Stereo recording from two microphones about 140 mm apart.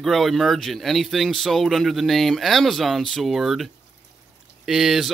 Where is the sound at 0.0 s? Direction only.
Centre (ahead or behind).